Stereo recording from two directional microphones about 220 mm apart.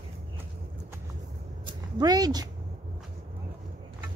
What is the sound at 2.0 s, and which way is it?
Speech, 15° right (ahead or behind).